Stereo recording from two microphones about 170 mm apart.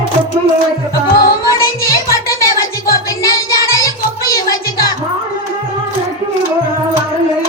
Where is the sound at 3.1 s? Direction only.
20° left (ahead or behind).